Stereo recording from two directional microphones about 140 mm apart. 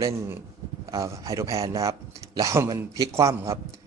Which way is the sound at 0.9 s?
25° right (ahead or behind).